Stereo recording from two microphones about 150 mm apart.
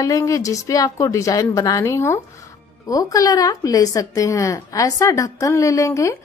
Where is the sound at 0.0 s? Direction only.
20° left (ahead or behind).